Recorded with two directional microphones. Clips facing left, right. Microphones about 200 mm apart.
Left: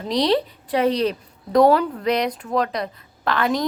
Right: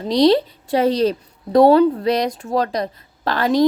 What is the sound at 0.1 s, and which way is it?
A woman's voice, 30° right (ahead or behind).